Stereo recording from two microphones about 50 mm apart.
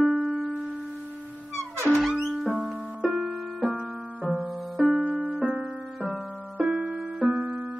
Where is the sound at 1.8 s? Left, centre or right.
Centre.